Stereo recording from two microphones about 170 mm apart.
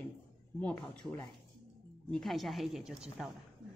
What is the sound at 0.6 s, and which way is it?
A woman's voice, 5° left (ahead or behind).